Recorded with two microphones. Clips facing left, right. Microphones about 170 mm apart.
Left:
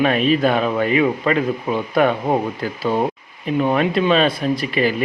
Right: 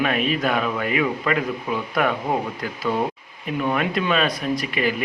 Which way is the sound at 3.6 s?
35° left (ahead or behind).